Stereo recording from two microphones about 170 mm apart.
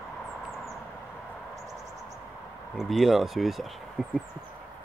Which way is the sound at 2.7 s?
Centre (ahead or behind).